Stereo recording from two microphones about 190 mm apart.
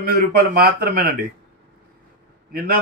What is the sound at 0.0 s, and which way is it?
A man's voice, 50° right (ahead or behind).